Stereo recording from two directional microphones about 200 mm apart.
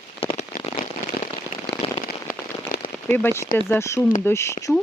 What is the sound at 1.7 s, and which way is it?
Firecracker, 55° left (ahead or behind).